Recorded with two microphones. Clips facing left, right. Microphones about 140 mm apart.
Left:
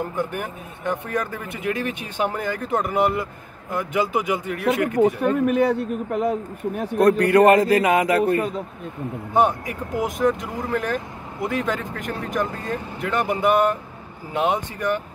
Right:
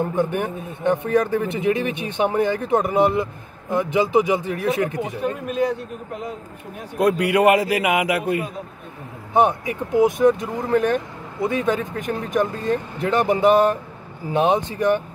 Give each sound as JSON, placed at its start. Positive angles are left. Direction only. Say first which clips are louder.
{"t": 0.0, "sound": "a man's voice", "louder": "right 5 dB", "side_deg": -25}
{"t": 4.9, "sound": "speech", "louder": "left 7 dB", "side_deg": 60}
{"t": 7.0, "sound": "a man's voice", "louder": "left 2 dB", "side_deg": -10}
{"t": 9.9, "sound": "a man's voice", "louder": "right 6 dB", "side_deg": -20}